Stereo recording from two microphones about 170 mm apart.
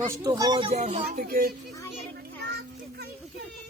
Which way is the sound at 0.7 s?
45° right (ahead or behind).